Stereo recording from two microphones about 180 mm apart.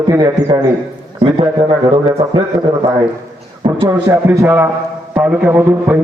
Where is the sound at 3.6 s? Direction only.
20° right (ahead or behind).